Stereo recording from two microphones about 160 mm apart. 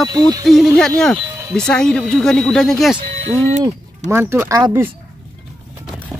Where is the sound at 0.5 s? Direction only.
Centre (ahead or behind).